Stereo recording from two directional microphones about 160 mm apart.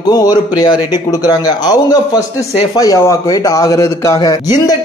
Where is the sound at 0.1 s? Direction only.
25° left (ahead or behind).